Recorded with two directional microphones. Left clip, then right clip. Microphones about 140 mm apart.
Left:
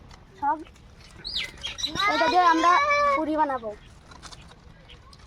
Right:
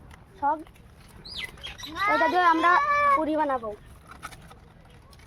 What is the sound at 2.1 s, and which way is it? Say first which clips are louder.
Speech: left 1 dB; 25° right (ahead or behind).